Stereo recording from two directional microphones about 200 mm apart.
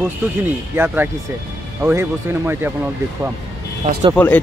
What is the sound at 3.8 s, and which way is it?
Speech, 25° right (ahead or behind).